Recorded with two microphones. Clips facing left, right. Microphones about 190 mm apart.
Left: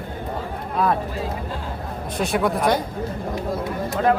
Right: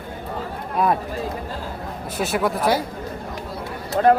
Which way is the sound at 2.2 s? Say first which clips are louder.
Left 1 dB; centre (ahead or behind).